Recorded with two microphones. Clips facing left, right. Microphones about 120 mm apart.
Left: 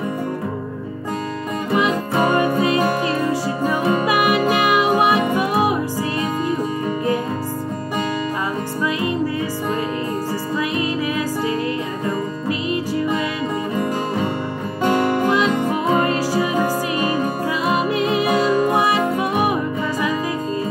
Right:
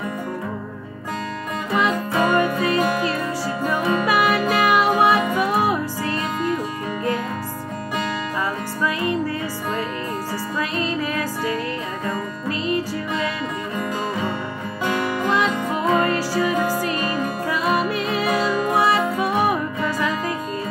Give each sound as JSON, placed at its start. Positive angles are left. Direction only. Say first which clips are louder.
{"t": 2.1, "sound": "music", "louder": "left 2 dB", "side_deg": 30}
{"t": 3.0, "sound": "music", "louder": "left 3 dB", "side_deg": 20}
{"t": 10.8, "sound": "music", "louder": "left 2 dB", "side_deg": 15}
{"t": 15.2, "sound": "music", "louder": "left 3 dB", "side_deg": 15}
{"t": 17.6, "sound": "music", "louder": "left 3 dB", "side_deg": 20}